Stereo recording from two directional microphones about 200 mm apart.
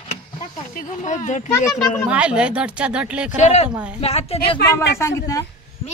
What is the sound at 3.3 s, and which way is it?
Speech, 35° left (ahead or behind).